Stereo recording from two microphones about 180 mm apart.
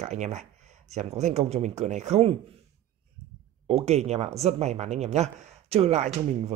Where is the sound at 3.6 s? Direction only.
35° right (ahead or behind).